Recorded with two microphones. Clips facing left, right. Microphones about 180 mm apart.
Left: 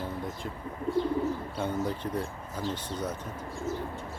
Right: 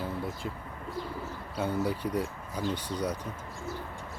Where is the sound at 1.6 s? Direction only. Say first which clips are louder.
Right 4 dB; 10° right (ahead or behind).